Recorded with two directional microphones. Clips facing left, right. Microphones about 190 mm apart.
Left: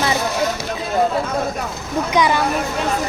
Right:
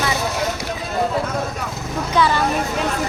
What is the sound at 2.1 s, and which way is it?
Speech, 15° left (ahead or behind).